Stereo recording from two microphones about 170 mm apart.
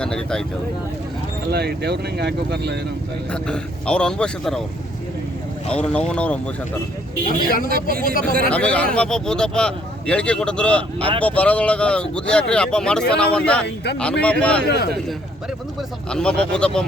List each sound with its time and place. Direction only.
0.0 s speech: 5° left (ahead or behind)
1.5 s speech: 75° right (ahead or behind)
3.3 s speech: 5° left (ahead or behind)
5.7 s speech: 5° left (ahead or behind)
7.3 s speech: 55° left (ahead or behind)
8.4 s speech: 5° left (ahead or behind)
16.0 s speech: 5° left (ahead or behind)